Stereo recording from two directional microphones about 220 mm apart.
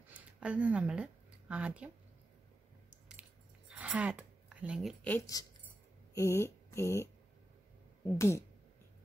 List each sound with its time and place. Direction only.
0.4 s a woman's voice: 5° right (ahead or behind)
3.1 s cutlery: 5° right (ahead or behind)
5.0 s speech: 10° left (ahead or behind)